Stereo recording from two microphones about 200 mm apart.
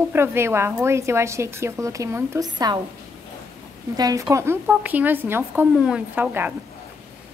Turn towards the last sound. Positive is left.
turn(degrees=-10)  # may be behind; listen again after turning